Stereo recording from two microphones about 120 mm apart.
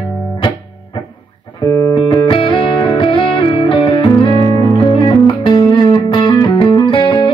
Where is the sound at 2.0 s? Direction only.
45° left (ahead or behind).